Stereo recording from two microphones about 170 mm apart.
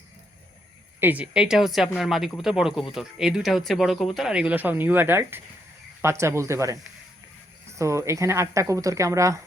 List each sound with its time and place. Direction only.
0.9 s speech: 10° right (ahead or behind)
7.8 s speech: 15° right (ahead or behind)